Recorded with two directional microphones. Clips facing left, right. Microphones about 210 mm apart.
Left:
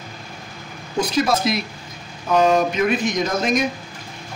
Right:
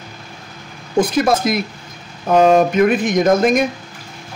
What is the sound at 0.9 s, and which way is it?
A man's voice, 50° right (ahead or behind).